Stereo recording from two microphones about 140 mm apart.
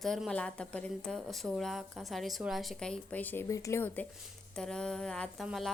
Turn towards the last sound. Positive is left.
turn(degrees=0)  # may be behind; listen again after turning